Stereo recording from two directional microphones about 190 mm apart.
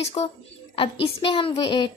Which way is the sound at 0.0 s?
35° left (ahead or behind).